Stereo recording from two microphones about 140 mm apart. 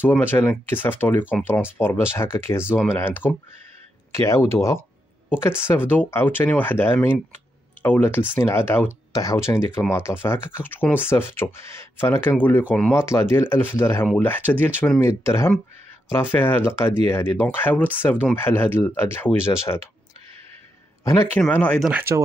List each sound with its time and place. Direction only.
0.0 s speech: 15° left (ahead or behind)
21.0 s speech: 25° left (ahead or behind)
21.4 s speech: 10° left (ahead or behind)